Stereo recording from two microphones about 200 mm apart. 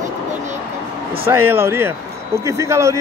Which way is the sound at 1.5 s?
10° right (ahead or behind).